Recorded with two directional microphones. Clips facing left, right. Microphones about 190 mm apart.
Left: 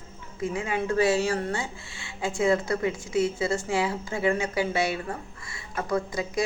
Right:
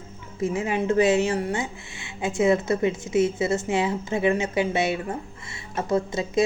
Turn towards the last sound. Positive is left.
turn(degrees=-25)  # may be behind; listen again after turning